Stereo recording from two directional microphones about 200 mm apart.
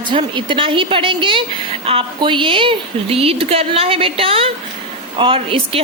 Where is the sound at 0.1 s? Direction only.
25° right (ahead or behind).